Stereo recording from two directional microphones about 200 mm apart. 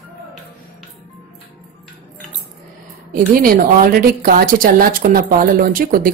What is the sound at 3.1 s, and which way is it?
A woman's voice, 45° right (ahead or behind).